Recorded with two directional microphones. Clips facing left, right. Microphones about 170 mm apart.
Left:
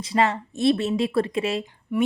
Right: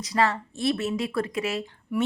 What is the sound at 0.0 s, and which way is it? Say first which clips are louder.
A woman's voice: left 2 dB; 25° left (ahead or behind).